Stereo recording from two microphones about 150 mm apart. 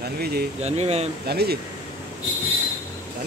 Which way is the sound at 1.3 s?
90° right.